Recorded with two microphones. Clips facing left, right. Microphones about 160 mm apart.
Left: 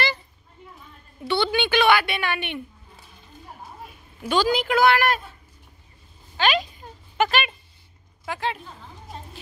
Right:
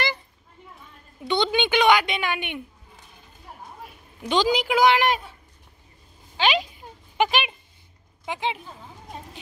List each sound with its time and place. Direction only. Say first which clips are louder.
1.2 s a woman's voice: even; 20° right (ahead or behind)
4.2 s a woman's voice: even; 15° right (ahead or behind)
6.3 s a sound: even; 15° right (ahead or behind)
8.3 s a woman's voice: even; 15° right (ahead or behind)